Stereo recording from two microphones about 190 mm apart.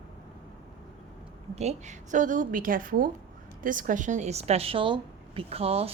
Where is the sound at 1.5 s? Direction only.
35° right (ahead or behind).